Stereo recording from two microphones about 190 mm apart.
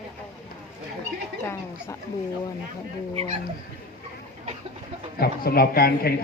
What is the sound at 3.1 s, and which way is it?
Speech, 30° right (ahead or behind).